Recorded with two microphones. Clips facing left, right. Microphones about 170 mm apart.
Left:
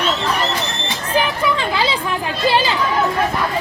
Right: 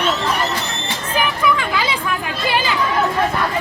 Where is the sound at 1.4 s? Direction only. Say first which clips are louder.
Even; 30° left (ahead or behind).